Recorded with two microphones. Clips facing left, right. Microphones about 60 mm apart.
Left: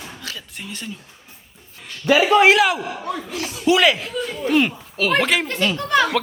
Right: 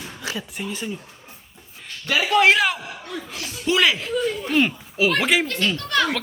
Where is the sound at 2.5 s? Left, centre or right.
Centre.